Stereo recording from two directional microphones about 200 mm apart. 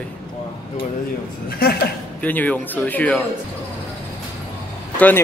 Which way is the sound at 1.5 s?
50° left (ahead or behind).